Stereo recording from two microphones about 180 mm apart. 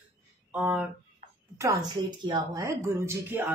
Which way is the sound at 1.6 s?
20° right (ahead or behind).